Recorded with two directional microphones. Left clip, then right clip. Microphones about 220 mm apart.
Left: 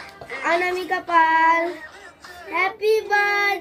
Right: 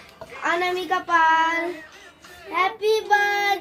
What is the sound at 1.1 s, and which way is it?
Child singing, 10° right (ahead or behind).